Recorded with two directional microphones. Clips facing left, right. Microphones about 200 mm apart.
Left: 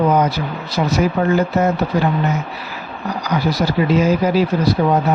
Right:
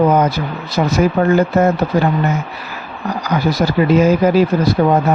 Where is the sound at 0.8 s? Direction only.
50° right (ahead or behind).